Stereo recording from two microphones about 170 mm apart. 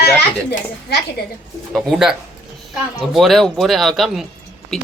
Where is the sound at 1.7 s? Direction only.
5° right (ahead or behind).